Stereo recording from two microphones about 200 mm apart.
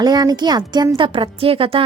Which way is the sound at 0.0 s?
20° right (ahead or behind).